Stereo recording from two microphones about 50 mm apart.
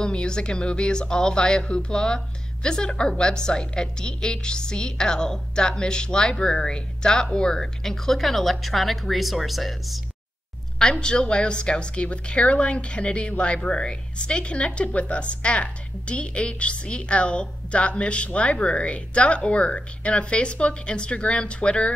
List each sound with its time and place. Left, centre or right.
0.0 s a woman's voice: centre
10.8 s a woman's voice: centre